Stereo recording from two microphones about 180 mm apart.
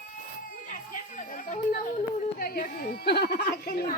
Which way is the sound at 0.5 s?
45° left (ahead or behind).